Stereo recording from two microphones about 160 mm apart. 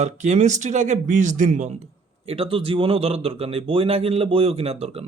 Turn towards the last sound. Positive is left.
turn(degrees=-40)  # may be behind; listen again after turning